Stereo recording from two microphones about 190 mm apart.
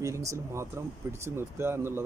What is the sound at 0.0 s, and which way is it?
Speech, 15° right (ahead or behind).